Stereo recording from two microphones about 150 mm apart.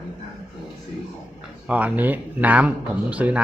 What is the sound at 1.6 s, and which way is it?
Speech, 10° right (ahead or behind).